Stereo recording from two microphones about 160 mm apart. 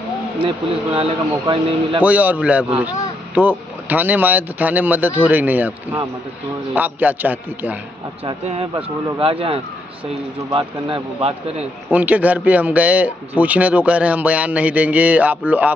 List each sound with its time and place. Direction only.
0.4 s a man's voice: 30° right (ahead or behind)
2.0 s speech: 10° right (ahead or behind)
6.7 s speech: 10° right (ahead or behind)
8.2 s a man's voice: 35° right (ahead or behind)
11.9 s speech: 10° right (ahead or behind)